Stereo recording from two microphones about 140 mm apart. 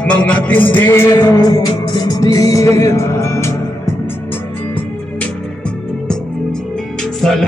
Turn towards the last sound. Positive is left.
turn(degrees=5)  # may be behind; listen again after turning